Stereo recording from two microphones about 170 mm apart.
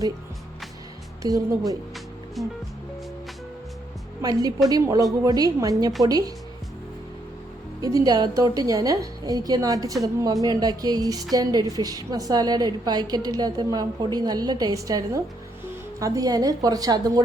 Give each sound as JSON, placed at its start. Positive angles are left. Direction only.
{"t": 1.2, "sound": "a woman's voice", "side_deg": -20}
{"t": 2.4, "sound": "music", "side_deg": 0}
{"t": 4.2, "sound": "a woman's voice", "side_deg": -20}
{"t": 7.8, "sound": "a woman's voice", "side_deg": -20}